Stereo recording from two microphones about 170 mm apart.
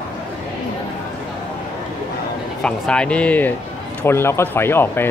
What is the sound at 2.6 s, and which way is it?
A man's voice, 5° left (ahead or behind).